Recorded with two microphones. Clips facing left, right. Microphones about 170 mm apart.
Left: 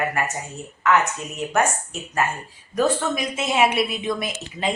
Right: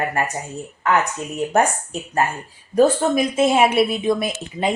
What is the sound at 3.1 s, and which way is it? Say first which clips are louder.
Speech: right 7 dB; 55° right (ahead or behind).